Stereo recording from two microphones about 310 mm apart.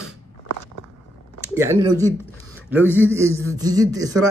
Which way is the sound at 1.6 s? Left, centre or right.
Centre.